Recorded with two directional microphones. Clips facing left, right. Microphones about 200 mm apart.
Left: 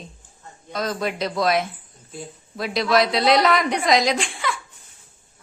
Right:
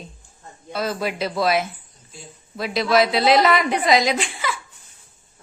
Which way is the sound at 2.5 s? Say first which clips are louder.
Right 1 dB; centre (ahead or behind).